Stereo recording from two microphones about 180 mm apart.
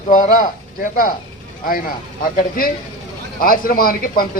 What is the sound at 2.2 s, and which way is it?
A man's voice, 55° left (ahead or behind).